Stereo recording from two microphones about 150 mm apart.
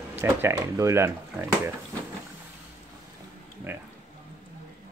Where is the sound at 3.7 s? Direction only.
15° right (ahead or behind).